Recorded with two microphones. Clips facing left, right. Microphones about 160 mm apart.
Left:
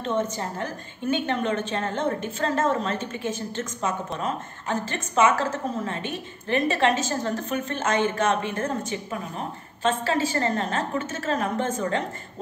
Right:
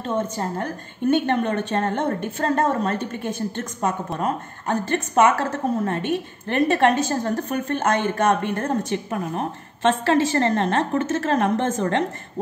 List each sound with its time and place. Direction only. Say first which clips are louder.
1.2 s a woman's voice: right 3 dB; 55° right (ahead or behind)